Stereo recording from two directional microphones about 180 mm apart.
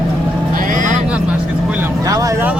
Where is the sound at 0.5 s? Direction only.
50° right (ahead or behind).